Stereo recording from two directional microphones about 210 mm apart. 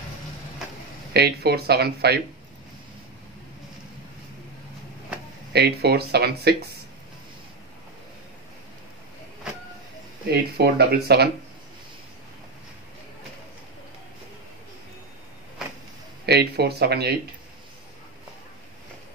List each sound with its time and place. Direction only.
1.1 s speech: 50° right (ahead or behind)
5.5 s speech: 50° right (ahead or behind)
10.2 s speech: 50° right (ahead or behind)
16.3 s speech: 50° right (ahead or behind)